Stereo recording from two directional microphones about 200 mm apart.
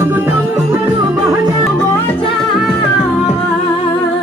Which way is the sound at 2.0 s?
Centre (ahead or behind).